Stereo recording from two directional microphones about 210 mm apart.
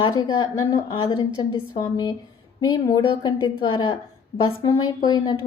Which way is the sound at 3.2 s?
20° left (ahead or behind).